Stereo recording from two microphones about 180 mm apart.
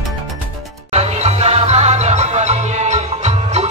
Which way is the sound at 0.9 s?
35° right (ahead or behind).